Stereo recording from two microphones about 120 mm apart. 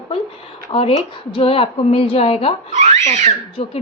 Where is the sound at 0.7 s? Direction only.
50° left (ahead or behind).